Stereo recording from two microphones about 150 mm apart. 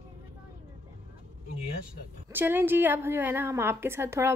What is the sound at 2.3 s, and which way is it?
A woman's voice, 15° right (ahead or behind).